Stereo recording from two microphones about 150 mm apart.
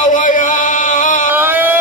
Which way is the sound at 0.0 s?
60° left (ahead or behind).